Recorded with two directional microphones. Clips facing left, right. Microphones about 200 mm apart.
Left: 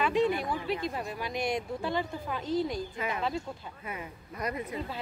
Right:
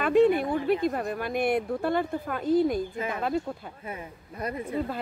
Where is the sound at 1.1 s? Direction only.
55° right (ahead or behind).